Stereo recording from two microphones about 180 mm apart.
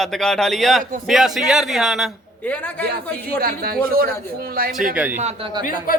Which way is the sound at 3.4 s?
55° right (ahead or behind).